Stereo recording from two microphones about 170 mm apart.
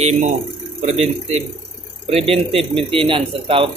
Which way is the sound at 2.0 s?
35° right (ahead or behind).